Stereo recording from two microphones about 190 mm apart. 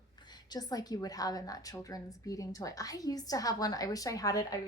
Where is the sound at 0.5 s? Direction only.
20° left (ahead or behind).